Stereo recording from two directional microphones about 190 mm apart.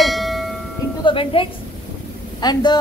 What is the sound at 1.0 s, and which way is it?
Speech, 30° left (ahead or behind).